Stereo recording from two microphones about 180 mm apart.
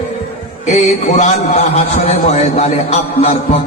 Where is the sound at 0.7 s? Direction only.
40° left (ahead or behind).